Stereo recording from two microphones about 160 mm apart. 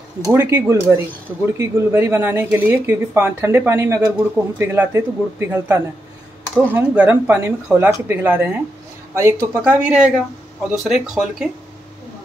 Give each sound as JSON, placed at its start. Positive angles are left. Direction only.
{"t": 0.2, "sound": "speech", "side_deg": -15}